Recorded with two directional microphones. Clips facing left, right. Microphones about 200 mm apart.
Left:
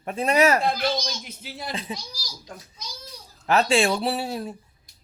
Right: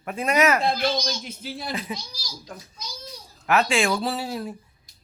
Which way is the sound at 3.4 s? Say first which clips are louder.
Left 1 dB; 30° left (ahead or behind).